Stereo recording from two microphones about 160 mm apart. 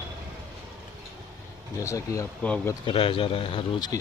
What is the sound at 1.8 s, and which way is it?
Speech, 20° left (ahead or behind).